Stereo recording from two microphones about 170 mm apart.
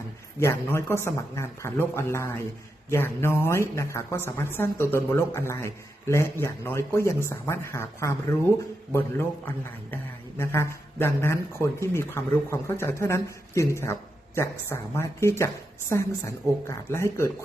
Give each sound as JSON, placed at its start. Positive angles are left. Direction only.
{"t": 0.3, "sound": "a woman's voice", "side_deg": 15}